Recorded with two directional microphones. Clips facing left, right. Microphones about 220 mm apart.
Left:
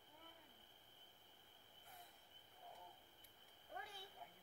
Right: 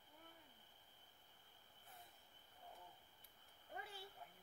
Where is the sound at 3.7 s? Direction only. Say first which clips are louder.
Right 1 dB; 5° right (ahead or behind).